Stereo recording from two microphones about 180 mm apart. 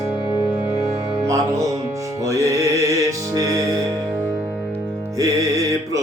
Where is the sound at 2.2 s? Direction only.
15° right (ahead or behind).